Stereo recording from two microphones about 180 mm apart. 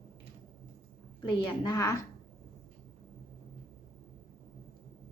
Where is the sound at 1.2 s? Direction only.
20° left (ahead or behind).